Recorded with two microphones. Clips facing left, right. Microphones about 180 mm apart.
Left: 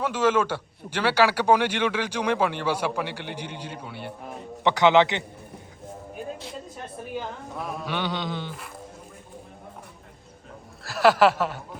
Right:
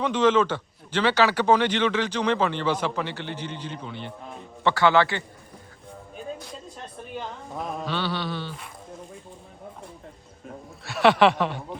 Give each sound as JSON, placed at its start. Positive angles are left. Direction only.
{"t": 0.0, "sound": "a man's voice", "side_deg": 10}
{"t": 7.1, "sound": "chuckle", "side_deg": 5}
{"t": 7.9, "sound": "a man's voice", "side_deg": 15}
{"t": 10.8, "sound": "chuckle", "side_deg": 0}